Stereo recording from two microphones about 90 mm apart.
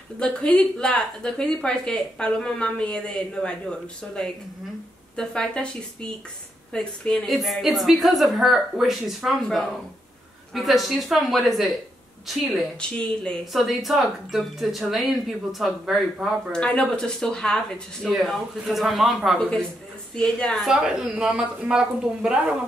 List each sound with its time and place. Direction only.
0.2 s a woman's voice: 10° left (ahead or behind)
12.9 s speech: 10° left (ahead or behind)
13.5 s a woman's voice: centre (ahead or behind)
16.5 s a woman's voice: 10° left (ahead or behind)
20.2 s speech: 10° left (ahead or behind)
20.6 s speech: 5° right (ahead or behind)